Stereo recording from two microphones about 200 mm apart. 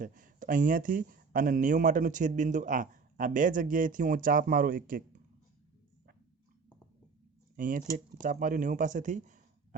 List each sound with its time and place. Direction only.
0.0 s speech: 40° right (ahead or behind)
7.5 s speech: 45° right (ahead or behind)